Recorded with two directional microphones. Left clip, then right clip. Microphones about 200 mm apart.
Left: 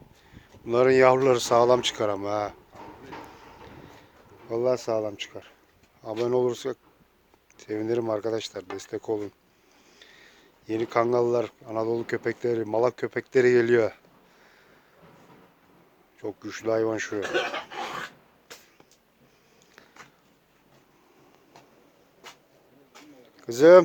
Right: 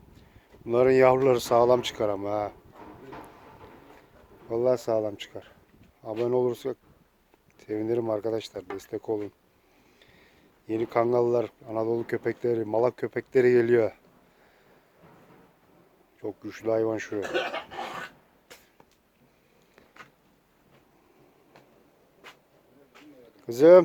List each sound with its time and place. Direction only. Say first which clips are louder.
0.3 s speech: left 1 dB; 5° right (ahead or behind)
4.4 s speech: even; 10° right (ahead or behind)
6.2 s speech: left 1 dB; centre (ahead or behind)
16.2 s speech: left 1 dB; centre (ahead or behind)
17.2 s a sound: left 2 dB; 45° left (ahead or behind)
22.9 s a sound: left 2 dB; 50° left (ahead or behind)
23.4 s speech: left 1 dB; centre (ahead or behind)